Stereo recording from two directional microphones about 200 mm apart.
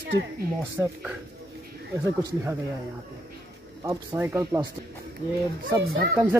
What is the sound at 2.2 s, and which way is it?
Speech, 15° right (ahead or behind).